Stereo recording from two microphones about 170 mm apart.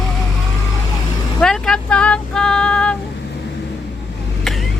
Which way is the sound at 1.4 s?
5° left (ahead or behind).